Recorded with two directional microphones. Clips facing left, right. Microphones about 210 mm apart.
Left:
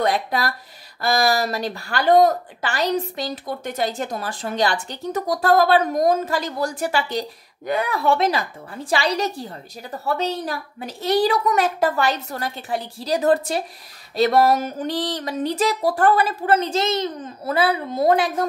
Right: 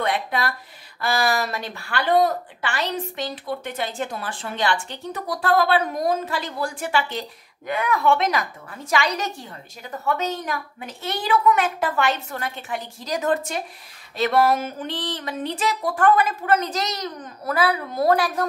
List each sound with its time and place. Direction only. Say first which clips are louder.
0.0 s a woman's voice: left 3 dB; 40° left (ahead or behind)